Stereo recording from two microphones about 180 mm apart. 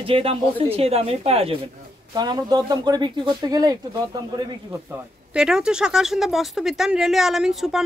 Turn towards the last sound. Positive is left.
turn(degrees=0)  # may be behind; listen again after turning